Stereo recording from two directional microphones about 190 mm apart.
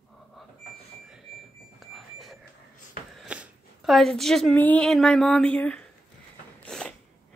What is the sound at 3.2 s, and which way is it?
Speech, 5° right (ahead or behind).